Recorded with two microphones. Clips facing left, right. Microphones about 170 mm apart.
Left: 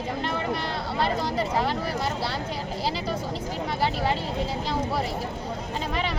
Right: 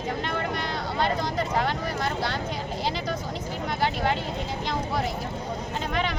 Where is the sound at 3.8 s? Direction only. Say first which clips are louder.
Even; centre (ahead or behind).